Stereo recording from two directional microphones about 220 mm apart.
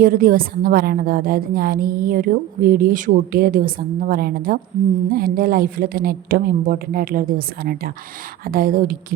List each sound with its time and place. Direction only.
0.0 s a woman's voice: 40° right (ahead or behind)